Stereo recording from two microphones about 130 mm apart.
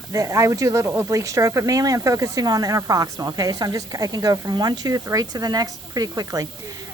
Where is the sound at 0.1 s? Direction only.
25° right (ahead or behind).